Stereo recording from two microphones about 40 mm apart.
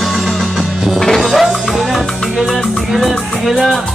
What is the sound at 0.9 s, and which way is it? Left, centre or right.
Music, centre.